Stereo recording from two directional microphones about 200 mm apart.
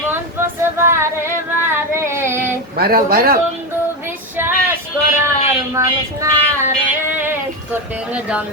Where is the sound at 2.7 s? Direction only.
50° right (ahead or behind).